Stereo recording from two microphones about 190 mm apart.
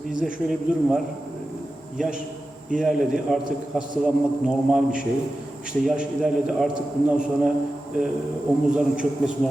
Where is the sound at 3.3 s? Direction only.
Centre (ahead or behind).